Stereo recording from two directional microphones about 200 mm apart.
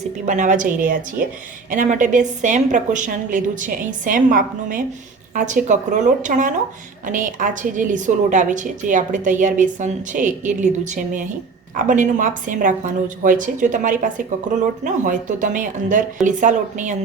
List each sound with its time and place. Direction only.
0.3 s a woman's voice: 40° right (ahead or behind)
1.7 s a woman's voice: 40° right (ahead or behind)